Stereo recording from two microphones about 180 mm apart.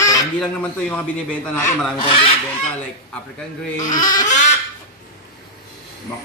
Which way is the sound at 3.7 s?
20° left (ahead or behind).